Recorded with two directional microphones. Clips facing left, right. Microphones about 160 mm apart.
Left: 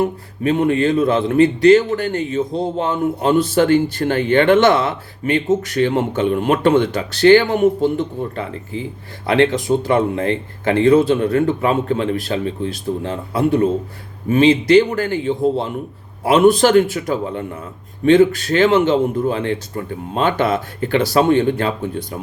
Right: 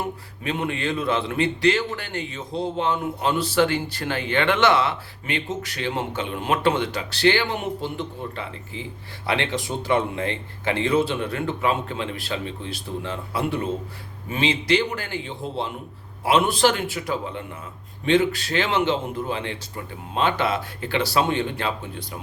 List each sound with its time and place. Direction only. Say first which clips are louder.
0.4 s a man's voice: left 10 dB; 45° left (ahead or behind)